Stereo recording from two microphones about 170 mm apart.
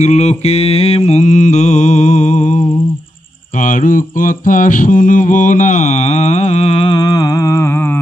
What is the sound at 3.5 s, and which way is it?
Mantra, 50° left (ahead or behind).